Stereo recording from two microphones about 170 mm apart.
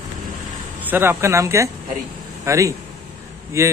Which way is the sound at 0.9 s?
15° right (ahead or behind).